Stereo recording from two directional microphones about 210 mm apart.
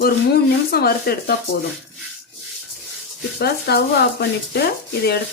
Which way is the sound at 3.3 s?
50° left (ahead or behind).